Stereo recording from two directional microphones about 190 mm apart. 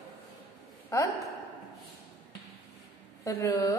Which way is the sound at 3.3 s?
15° left (ahead or behind).